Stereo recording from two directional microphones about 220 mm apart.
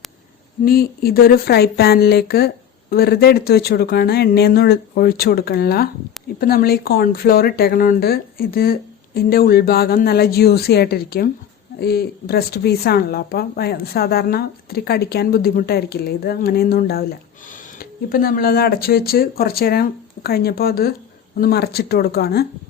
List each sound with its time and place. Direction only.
0.6 s speech: 45° left (ahead or behind)
18.1 s speech: 40° left (ahead or behind)